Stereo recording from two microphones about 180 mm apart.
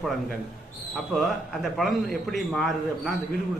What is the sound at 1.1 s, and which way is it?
A man's voice, centre (ahead or behind).